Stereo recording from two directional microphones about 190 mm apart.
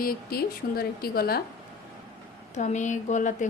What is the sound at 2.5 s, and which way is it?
Speech, 40° left (ahead or behind).